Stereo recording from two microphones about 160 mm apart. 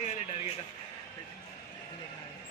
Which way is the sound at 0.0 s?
50° left (ahead or behind).